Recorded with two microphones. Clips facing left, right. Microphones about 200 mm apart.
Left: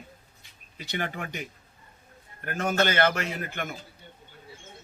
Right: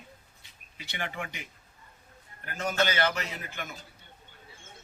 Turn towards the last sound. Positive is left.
turn(degrees=55)  # may be behind; listen again after turning